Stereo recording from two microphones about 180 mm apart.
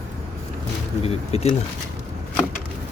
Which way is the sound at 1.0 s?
35° left (ahead or behind).